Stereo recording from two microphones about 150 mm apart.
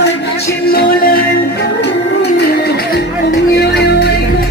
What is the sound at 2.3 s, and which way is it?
Music, 90° left.